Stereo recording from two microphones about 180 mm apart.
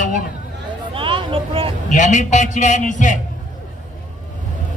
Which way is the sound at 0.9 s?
30° right (ahead or behind).